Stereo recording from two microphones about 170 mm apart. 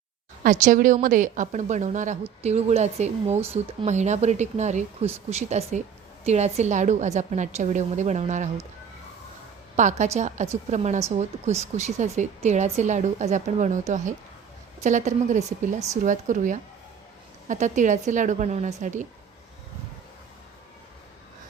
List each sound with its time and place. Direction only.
0.4 s a woman's voice: 50° right (ahead or behind)
9.7 s a woman's voice: 45° right (ahead or behind)